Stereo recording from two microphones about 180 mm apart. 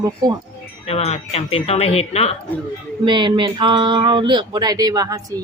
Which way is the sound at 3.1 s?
25° right (ahead or behind).